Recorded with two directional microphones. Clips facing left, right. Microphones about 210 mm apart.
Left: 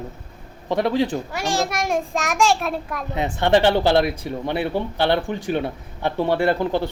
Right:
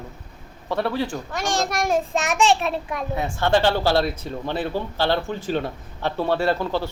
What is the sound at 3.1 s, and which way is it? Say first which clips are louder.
Speech: left 3 dB; 20° left (ahead or behind).